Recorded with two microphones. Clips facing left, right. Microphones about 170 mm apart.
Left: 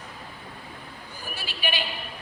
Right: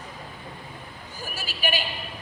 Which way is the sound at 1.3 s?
45° right (ahead or behind).